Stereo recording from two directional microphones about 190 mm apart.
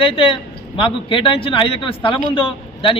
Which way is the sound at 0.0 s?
30° left (ahead or behind).